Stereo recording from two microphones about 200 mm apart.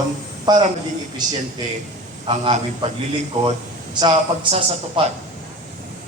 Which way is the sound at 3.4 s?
35° right (ahead or behind).